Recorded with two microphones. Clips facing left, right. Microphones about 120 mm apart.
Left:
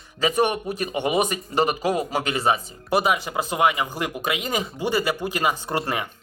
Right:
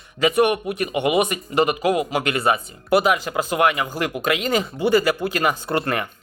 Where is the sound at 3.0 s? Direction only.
20° left (ahead or behind).